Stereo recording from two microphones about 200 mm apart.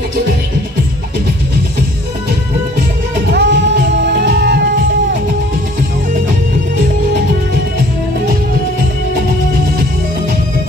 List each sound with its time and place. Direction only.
3.3 s music: 60° right (ahead or behind)